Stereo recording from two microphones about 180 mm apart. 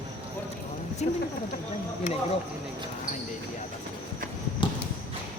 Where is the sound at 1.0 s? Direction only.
40° left (ahead or behind).